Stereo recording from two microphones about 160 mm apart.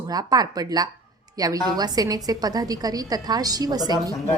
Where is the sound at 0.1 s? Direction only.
25° right (ahead or behind).